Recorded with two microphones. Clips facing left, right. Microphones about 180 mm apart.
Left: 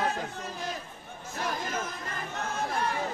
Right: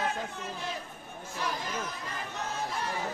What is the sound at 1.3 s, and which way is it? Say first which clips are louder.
Chatter: left 2 dB; 50° left (ahead or behind).